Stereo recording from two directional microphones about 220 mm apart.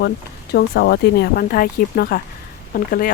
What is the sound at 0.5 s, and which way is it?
Speech, 45° left (ahead or behind).